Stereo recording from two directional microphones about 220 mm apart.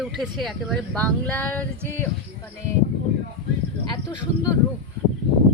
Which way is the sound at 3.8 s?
20° left (ahead or behind).